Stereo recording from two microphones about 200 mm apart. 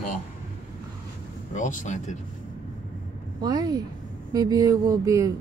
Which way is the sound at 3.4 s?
20° right (ahead or behind).